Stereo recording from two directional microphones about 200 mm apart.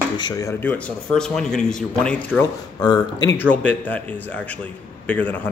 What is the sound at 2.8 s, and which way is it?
Speech, 20° left (ahead or behind).